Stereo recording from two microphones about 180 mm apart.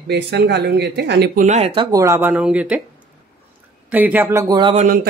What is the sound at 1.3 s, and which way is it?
Speech, 40° right (ahead or behind).